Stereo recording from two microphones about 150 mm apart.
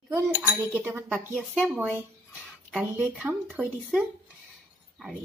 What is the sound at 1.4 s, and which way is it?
Speech, 5° left (ahead or behind).